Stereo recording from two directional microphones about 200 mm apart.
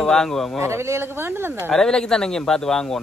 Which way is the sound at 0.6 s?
15° right (ahead or behind).